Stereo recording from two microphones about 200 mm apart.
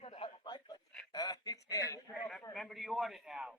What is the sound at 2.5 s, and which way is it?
A man's voice, centre (ahead or behind).